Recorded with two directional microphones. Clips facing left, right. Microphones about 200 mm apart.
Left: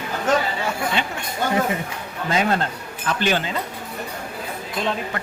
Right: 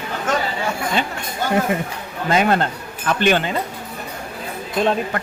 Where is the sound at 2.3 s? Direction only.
65° right (ahead or behind).